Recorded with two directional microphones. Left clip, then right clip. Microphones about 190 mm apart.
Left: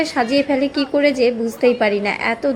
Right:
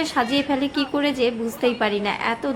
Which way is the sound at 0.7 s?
15° left (ahead or behind).